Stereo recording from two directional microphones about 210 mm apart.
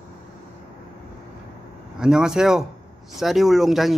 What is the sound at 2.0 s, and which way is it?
A man's voice, 5° right (ahead or behind).